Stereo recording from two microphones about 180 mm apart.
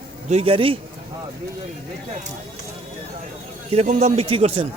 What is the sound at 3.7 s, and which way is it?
Speech, 35° right (ahead or behind).